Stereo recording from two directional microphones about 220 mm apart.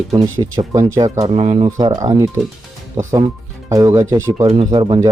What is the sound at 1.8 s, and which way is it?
Speech, 15° right (ahead or behind).